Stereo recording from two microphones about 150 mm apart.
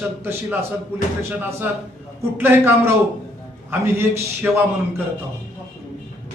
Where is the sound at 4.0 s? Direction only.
15° right (ahead or behind).